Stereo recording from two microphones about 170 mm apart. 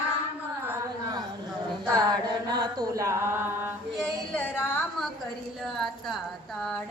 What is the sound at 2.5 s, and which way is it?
Mantra, 25° right (ahead or behind).